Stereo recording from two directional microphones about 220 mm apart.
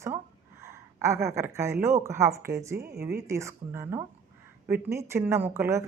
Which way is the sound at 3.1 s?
15° right (ahead or behind).